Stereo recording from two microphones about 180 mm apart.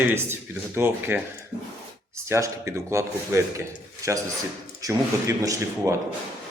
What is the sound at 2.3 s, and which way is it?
Speech, 15° right (ahead or behind).